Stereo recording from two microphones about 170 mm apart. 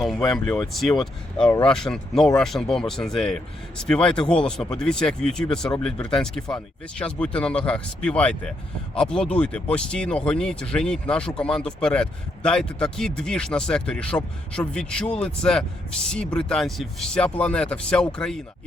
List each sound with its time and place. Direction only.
0.2 s speech: 20° left (ahead or behind)
0.7 s speech: centre (ahead or behind)